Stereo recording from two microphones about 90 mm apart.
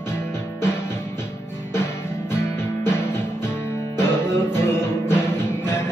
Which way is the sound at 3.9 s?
25° left (ahead or behind).